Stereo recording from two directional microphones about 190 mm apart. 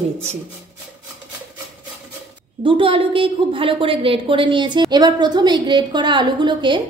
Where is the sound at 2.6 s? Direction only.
30° right (ahead or behind).